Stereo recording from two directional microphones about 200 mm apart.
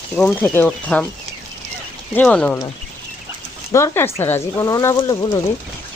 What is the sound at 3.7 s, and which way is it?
Speech, 15° left (ahead or behind).